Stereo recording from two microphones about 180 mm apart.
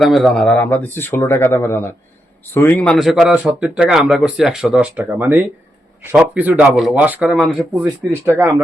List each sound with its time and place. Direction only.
0.0 s speech: centre (ahead or behind)
3.0 s speech: centre (ahead or behind)
8.1 s speech: 15° right (ahead or behind)